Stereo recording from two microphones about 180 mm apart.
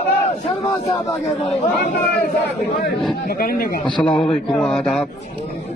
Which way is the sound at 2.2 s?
65° left (ahead or behind).